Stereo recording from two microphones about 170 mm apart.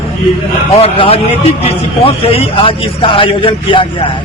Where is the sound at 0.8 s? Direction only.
35° left (ahead or behind).